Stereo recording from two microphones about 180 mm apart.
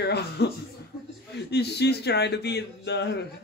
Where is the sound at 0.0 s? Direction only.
65° left (ahead or behind).